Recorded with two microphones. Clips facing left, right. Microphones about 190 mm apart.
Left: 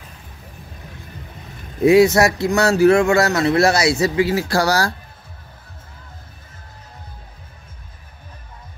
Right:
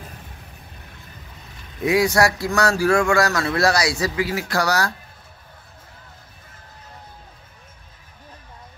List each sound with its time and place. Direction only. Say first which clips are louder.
1.9 s speech: left 6 dB; 25° left (ahead or behind)